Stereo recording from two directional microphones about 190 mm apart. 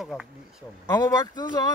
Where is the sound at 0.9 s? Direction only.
20° left (ahead or behind).